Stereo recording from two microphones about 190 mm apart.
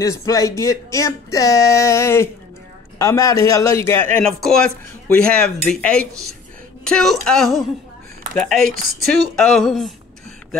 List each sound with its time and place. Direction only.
0.0 s a man's voice: 15° left (ahead or behind); by 9.9 s centre (ahead or behind)